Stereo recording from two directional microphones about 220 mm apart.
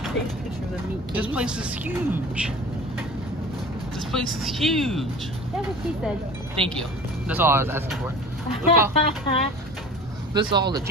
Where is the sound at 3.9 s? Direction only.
Centre (ahead or behind).